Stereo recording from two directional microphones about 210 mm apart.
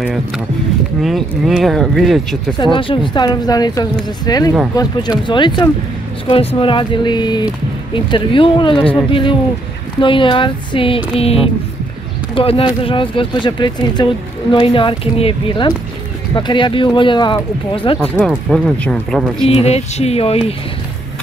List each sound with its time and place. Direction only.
1.0 s speech: centre (ahead or behind)
2.6 s speech: 25° left (ahead or behind)
18.1 s speech: centre (ahead or behind)
19.4 s speech: 30° left (ahead or behind)